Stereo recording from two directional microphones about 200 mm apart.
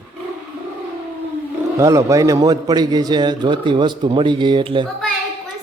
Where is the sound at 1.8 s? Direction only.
15° right (ahead or behind).